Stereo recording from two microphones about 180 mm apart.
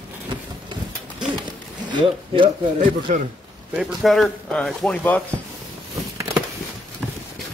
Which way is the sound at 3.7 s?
5° right (ahead or behind).